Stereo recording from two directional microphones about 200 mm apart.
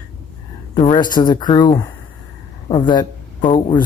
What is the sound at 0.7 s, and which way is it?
Speech, 20° left (ahead or behind).